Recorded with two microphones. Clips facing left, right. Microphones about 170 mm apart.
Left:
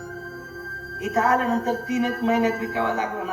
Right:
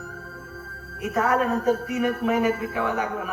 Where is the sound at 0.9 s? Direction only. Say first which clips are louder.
Left 1 dB; 20° left (ahead or behind).